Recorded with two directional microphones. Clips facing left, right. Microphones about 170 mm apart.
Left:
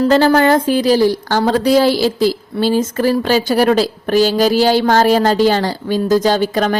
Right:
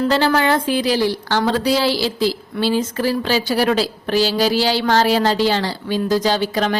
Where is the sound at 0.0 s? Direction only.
40° left (ahead or behind).